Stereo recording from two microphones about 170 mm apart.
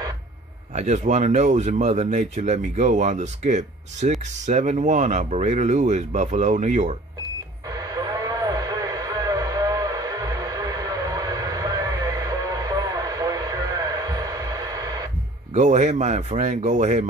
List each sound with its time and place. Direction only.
0.7 s speech: 45° right (ahead or behind)
7.7 s radio: 20° right (ahead or behind)
15.5 s speech: 45° right (ahead or behind)